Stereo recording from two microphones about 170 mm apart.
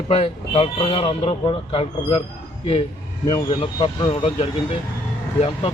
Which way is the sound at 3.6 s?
30° left (ahead or behind).